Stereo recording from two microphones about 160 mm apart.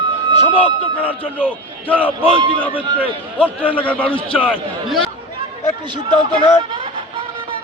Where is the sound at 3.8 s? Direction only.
10° left (ahead or behind).